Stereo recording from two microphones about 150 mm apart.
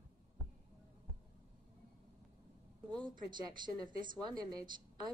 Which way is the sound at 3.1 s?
30° right (ahead or behind).